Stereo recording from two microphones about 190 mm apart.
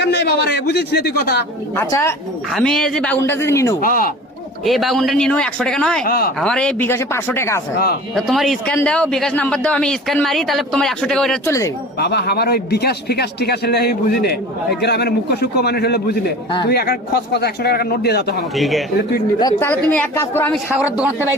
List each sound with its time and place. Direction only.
0.0 s a man's voice: 60° left (ahead or behind)
1.7 s a man's voice: 15° left (ahead or behind)
2.5 s a man's voice: centre (ahead or behind)
3.8 s speech: 50° left (ahead or behind)
4.6 s a man's voice: centre (ahead or behind)
6.1 s speech: 50° left (ahead or behind)
6.4 s a man's voice: 5° left (ahead or behind)
8.1 s a man's voice: centre (ahead or behind)
11.4 s a man's voice: 15° left (ahead or behind)
11.9 s a man's voice: 60° left (ahead or behind)
18.5 s a man's voice: centre (ahead or behind)
19.4 s a man's voice: 15° left (ahead or behind)